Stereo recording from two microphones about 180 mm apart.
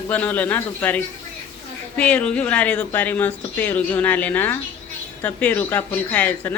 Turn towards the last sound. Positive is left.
turn(degrees=10)  # may be behind; listen again after turning